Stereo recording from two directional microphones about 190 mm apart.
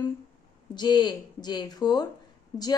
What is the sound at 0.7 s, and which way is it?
A woman's voice, 25° left (ahead or behind).